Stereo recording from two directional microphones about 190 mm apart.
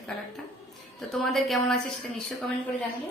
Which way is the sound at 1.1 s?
Centre (ahead or behind).